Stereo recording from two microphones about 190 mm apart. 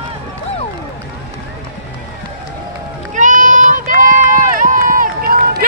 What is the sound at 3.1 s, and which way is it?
Run, 40° right (ahead or behind).